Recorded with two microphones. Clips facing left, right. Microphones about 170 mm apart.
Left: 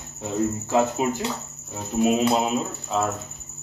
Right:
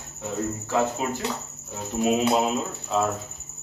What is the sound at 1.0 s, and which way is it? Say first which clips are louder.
Speech: left 4 dB; 20° left (ahead or behind).